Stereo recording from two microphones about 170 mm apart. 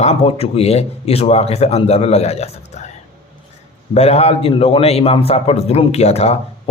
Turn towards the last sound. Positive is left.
turn(degrees=40)  # may be behind; listen again after turning